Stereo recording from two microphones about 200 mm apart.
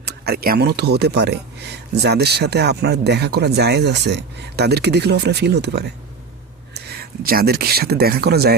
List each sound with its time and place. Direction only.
0.0 s speech: 50° right (ahead or behind)